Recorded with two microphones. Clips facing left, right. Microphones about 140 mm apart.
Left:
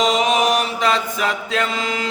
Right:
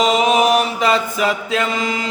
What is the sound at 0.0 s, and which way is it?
Chant, 5° right (ahead or behind).